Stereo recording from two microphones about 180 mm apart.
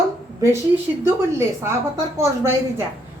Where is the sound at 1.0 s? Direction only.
15° right (ahead or behind).